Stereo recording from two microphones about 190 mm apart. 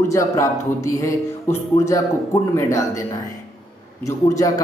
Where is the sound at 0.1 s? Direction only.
15° left (ahead or behind).